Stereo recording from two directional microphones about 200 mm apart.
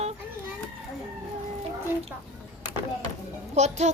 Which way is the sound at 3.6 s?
35° right (ahead or behind).